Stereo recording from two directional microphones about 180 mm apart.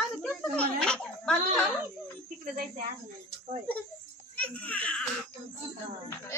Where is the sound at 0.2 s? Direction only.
5° left (ahead or behind).